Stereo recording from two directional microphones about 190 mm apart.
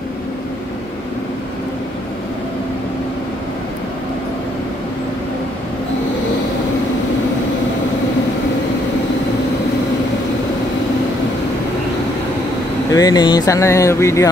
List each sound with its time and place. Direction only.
12.9 s speech: 20° left (ahead or behind)